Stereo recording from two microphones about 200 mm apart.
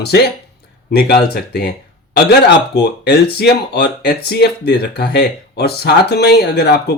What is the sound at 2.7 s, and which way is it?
Speech, 55° left (ahead or behind).